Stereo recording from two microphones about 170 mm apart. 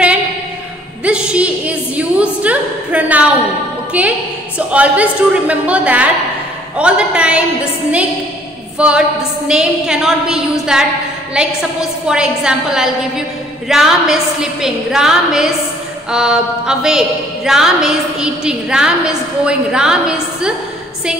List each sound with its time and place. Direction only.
1.0 s a sound: 5° right (ahead or behind)
3.9 s a woman's voice: 10° right (ahead or behind)
8.7 s a woman's voice: 5° right (ahead or behind)